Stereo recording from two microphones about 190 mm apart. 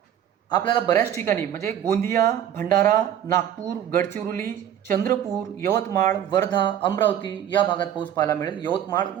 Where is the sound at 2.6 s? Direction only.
45° right (ahead or behind).